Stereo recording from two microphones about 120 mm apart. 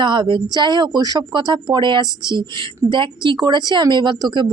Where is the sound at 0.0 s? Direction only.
40° right (ahead or behind).